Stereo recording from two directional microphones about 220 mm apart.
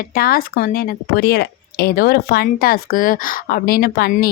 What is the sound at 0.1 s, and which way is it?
Speech, 40° left (ahead or behind).